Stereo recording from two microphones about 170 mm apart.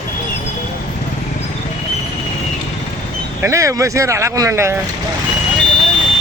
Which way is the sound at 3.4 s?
20° right (ahead or behind).